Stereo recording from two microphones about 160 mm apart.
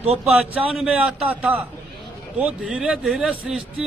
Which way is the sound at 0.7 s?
5° right (ahead or behind).